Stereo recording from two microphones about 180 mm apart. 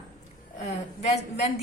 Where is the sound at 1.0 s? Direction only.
35° left (ahead or behind).